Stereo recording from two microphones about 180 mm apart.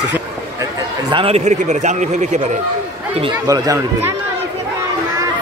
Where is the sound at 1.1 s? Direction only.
35° right (ahead or behind).